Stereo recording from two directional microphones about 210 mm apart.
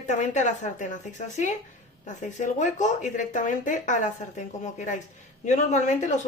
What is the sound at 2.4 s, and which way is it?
Speech, 35° left (ahead or behind).